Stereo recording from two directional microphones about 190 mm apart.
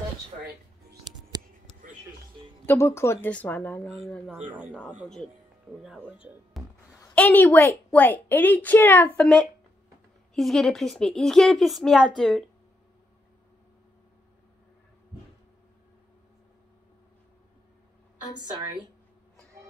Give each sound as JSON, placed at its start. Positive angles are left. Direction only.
{"t": 2.6, "sound": "a woman's voice", "side_deg": 10}
{"t": 4.0, "sound": "speech", "side_deg": 0}
{"t": 6.0, "sound": "speech", "side_deg": -5}
{"t": 6.9, "sound": "a woman's voice", "side_deg": 15}
{"t": 10.3, "sound": "speech", "side_deg": 0}